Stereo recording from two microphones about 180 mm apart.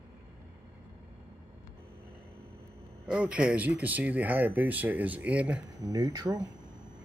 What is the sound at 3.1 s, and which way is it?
Speech, 5° right (ahead or behind).